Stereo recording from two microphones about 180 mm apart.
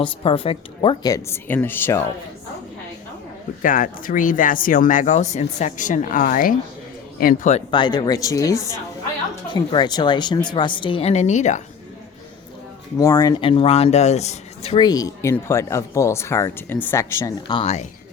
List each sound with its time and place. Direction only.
0.0 s speech: 30° left (ahead or behind); by 2.0 s 15° left (ahead or behind)
3.6 s a man's voice: 50° left (ahead or behind)
7.7 s speech: 25° left (ahead or behind); by 11.6 s 40° left (ahead or behind)
13.0 s speech: 15° left (ahead or behind); by 14.8 s 35° left (ahead or behind)
14.8 s speech: 20° left (ahead or behind)
17.5 s speech: 35° left (ahead or behind)